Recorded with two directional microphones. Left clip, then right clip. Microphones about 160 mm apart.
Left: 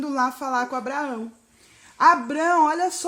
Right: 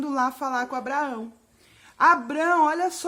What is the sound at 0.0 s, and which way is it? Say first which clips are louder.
A woman's voice: left 1 dB; 25° left (ahead or behind).